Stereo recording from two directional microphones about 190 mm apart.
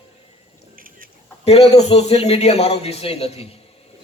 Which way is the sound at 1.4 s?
35° left (ahead or behind).